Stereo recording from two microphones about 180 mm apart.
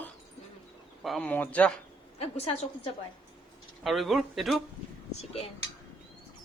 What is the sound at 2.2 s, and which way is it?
Speech, 35° left (ahead or behind).